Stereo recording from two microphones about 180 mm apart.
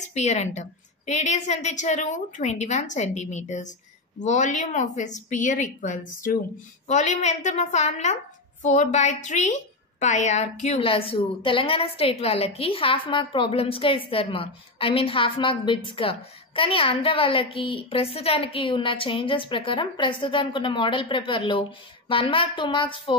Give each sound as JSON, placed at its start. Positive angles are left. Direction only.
{"t": 0.0, "sound": "a woman's voice", "side_deg": 40}